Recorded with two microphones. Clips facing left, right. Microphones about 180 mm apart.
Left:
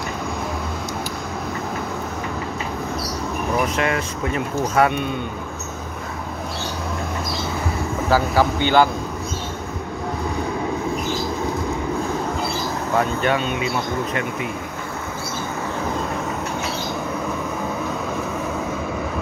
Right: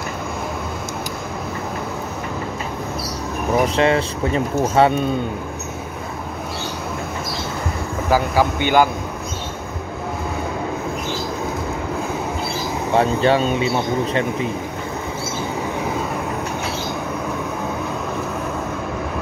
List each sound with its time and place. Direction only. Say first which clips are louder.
3.5 s speech: right 6 dB; 30° right (ahead or behind)
8.1 s speech: right 1 dB; 15° right (ahead or behind)
12.9 s speech: right 5 dB; 30° right (ahead or behind)